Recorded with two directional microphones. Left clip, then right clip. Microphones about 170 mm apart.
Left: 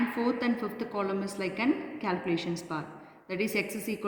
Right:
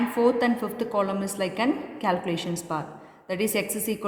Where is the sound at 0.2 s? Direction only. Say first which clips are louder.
Right 12 dB; 60° right (ahead or behind).